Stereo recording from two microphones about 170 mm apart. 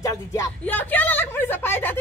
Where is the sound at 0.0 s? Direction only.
20° left (ahead or behind).